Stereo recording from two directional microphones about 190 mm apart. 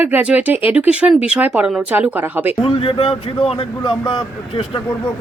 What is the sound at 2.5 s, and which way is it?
Speech, 30° left (ahead or behind).